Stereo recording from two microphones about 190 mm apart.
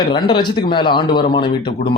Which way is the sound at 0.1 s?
25° left (ahead or behind).